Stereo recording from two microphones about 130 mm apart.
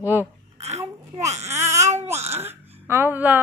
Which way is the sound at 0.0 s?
15° right (ahead or behind).